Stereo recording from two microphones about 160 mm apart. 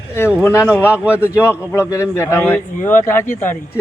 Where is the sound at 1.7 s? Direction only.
15° left (ahead or behind).